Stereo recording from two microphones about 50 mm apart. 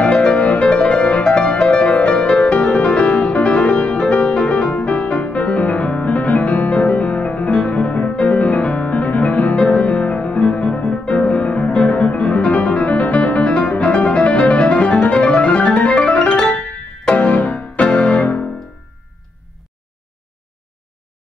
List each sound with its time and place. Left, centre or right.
0.0 s music: left
2.2 s music: centre
16.4 s piano: left